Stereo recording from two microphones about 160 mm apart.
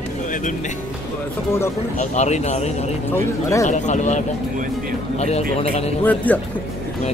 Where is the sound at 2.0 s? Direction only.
45° left (ahead or behind).